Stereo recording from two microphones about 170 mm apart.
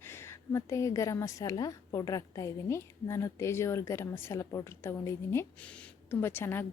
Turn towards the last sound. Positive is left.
turn(degrees=10)  # may be behind; listen again after turning